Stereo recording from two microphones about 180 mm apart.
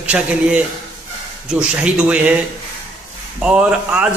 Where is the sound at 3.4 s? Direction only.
5° right (ahead or behind).